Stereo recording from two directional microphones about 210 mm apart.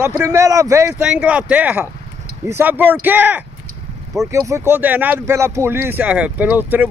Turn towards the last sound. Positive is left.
turn(degrees=-10)  # may be behind; listen again after turning